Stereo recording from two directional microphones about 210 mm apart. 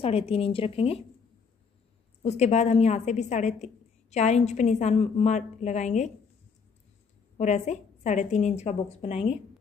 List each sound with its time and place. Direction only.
0.0 s speech: 30° left (ahead or behind)
2.2 s a woman's voice: 30° left (ahead or behind)
7.3 s a woman's voice: 35° left (ahead or behind)